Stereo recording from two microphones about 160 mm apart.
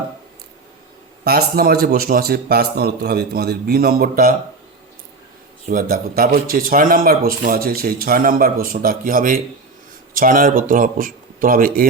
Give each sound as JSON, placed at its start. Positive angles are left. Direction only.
{"t": 1.2, "sound": "a man's voice", "side_deg": -80}
{"t": 5.6, "sound": "speech", "side_deg": -65}